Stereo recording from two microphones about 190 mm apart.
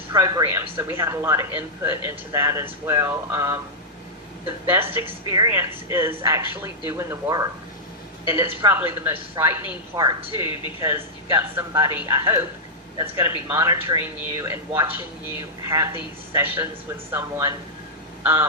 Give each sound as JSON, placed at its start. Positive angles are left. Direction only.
{"t": 0.1, "sound": "speech", "side_deg": -15}
{"t": 4.9, "sound": "speech", "side_deg": -15}
{"t": 10.5, "sound": "speech", "side_deg": 30}
{"t": 10.8, "sound": "speech", "side_deg": -15}
{"t": 18.2, "sound": "crow", "side_deg": -10}